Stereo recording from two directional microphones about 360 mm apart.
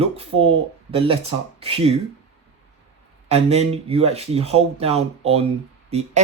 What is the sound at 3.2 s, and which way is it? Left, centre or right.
Speech, centre.